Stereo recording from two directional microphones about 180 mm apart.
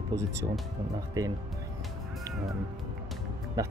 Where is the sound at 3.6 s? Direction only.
20° right (ahead or behind).